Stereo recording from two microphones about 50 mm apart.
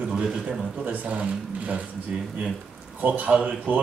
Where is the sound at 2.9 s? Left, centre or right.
Right.